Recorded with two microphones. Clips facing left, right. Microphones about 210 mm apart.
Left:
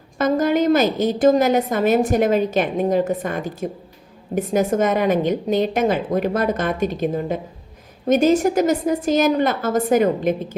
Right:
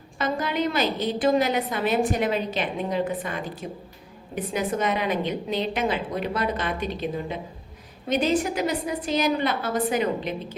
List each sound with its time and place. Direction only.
0.2 s a woman's voice: 45° left (ahead or behind)